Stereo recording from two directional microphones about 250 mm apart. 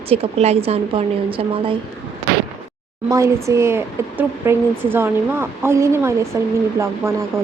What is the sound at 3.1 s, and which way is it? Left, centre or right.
Speech, centre.